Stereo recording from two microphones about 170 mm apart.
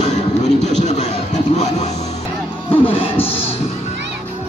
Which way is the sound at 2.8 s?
30° left (ahead or behind).